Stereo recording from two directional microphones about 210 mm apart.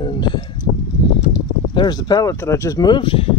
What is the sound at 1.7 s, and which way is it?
Speech, 20° left (ahead or behind).